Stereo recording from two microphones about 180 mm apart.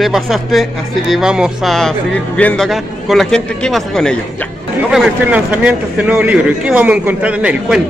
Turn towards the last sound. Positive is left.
turn(degrees=-5)  # may be behind; listen again after turning